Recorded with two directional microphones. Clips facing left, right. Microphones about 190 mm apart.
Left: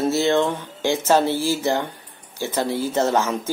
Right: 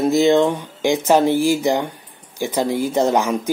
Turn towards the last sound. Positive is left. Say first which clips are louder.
# right 3 dB
turn(degrees=-15)  # may be behind; listen again after turning